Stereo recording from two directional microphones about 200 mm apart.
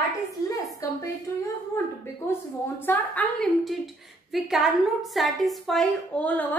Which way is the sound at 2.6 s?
10° left (ahead or behind).